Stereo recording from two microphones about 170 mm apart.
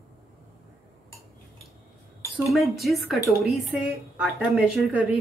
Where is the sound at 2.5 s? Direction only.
Centre (ahead or behind).